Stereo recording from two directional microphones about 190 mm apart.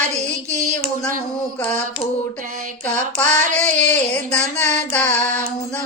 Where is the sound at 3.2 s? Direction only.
5° left (ahead or behind).